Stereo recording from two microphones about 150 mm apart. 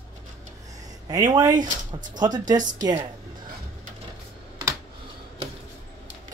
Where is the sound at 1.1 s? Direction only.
25° right (ahead or behind).